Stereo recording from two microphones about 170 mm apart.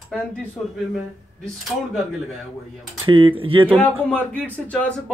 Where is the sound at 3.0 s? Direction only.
30° right (ahead or behind).